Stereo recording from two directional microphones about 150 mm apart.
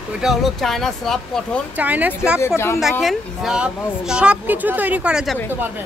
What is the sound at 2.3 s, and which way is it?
Speech, 15° left (ahead or behind).